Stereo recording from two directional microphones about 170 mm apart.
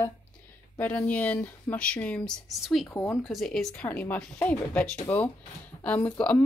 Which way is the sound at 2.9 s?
15° left (ahead or behind).